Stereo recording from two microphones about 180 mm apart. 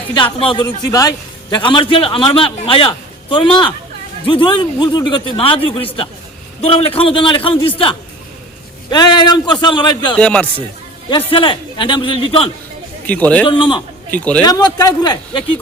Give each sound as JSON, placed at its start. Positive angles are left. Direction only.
{"t": 0.2, "sound": "a man's voice", "side_deg": 30}
{"t": 10.2, "sound": "a man's voice", "side_deg": 5}
{"t": 11.1, "sound": "a man's voice", "side_deg": 25}
{"t": 13.1, "sound": "a man's voice", "side_deg": 10}
{"t": 13.5, "sound": "a man's voice", "side_deg": 25}
{"t": 14.1, "sound": "a man's voice", "side_deg": 5}
{"t": 14.4, "sound": "a man's voice", "side_deg": 20}